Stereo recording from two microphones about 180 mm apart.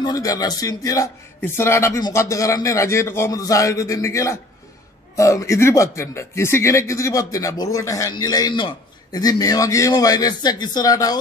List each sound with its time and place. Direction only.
0.0 s speech: 20° left (ahead or behind)